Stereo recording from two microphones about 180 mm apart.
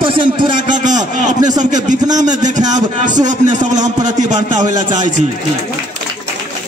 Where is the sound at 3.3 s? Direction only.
45° right (ahead or behind).